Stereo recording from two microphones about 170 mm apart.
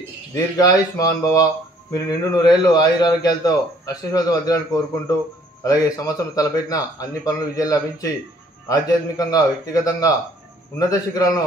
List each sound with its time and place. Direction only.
0.6 s speech: 20° left (ahead or behind)